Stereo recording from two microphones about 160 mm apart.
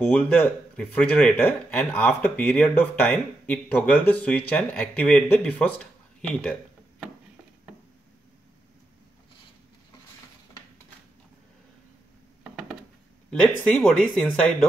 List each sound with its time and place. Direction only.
0.0 s speech: 10° left (ahead or behind)
13.3 s speech: 5° left (ahead or behind)